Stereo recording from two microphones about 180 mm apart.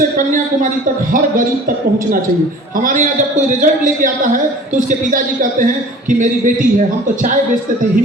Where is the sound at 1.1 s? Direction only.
50° right (ahead or behind).